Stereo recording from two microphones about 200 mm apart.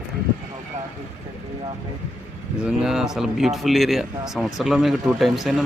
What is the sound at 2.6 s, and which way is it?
Speech, centre (ahead or behind).